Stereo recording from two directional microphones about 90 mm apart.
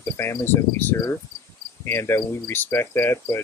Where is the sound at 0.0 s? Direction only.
30° left (ahead or behind).